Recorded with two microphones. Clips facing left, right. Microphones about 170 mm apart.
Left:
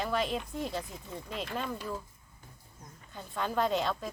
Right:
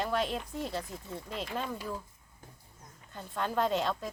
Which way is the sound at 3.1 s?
Centre (ahead or behind).